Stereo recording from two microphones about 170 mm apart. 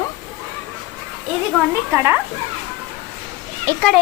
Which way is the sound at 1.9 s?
15° right (ahead or behind).